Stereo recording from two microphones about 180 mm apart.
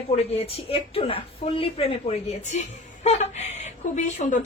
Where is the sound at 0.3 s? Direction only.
35° left (ahead or behind).